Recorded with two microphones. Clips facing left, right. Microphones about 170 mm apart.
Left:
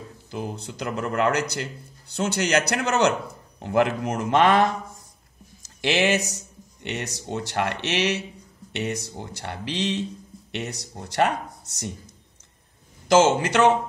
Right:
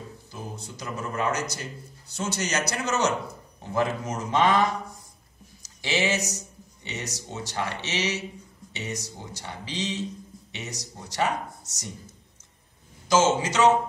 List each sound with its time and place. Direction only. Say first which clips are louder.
0.3 s a man's voice: left 9 dB; 65° left (ahead or behind)
13.1 s a man's voice: left 4 dB; 60° left (ahead or behind)